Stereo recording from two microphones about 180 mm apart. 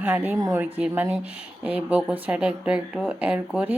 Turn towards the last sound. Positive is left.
turn(degrees=-10)  # may be behind; listen again after turning